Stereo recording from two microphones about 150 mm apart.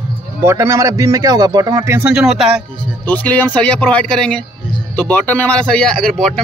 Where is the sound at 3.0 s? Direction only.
10° left (ahead or behind).